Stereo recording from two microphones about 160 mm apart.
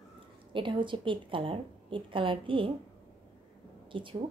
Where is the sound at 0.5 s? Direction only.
30° right (ahead or behind).